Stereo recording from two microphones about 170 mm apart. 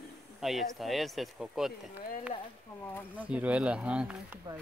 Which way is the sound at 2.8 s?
10° left (ahead or behind).